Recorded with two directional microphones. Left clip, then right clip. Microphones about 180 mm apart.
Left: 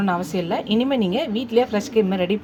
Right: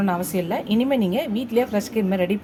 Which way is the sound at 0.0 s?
5° left (ahead or behind).